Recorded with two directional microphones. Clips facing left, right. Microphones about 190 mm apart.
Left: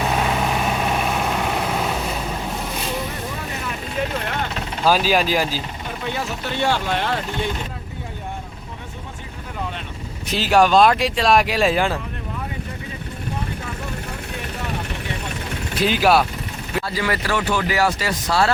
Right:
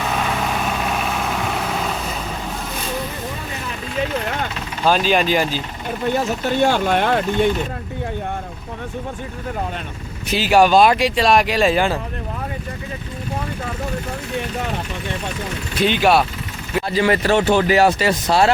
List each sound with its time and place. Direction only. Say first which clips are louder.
4.9 s speech: right 1 dB; 5° left (ahead or behind)
6.1 s speech: right 7 dB; 45° right (ahead or behind)
10.2 s speech: right 2 dB; 5° right (ahead or behind)
15.8 s speech: right 1 dB; centre (ahead or behind)
16.9 s speech: right 8 dB; 25° right (ahead or behind)